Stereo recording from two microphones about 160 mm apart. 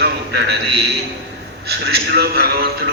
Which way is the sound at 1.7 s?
85° right.